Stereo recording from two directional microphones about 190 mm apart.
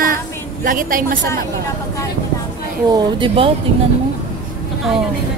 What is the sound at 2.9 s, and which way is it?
Speech, 25° right (ahead or behind).